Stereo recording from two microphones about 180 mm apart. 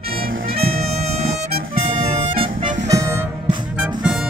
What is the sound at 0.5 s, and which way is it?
Music, 35° right (ahead or behind).